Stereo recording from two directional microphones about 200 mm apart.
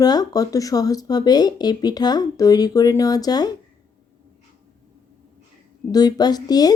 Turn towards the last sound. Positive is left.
turn(degrees=20)  # may be behind; listen again after turning